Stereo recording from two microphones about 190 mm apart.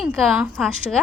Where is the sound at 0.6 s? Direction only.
Centre (ahead or behind).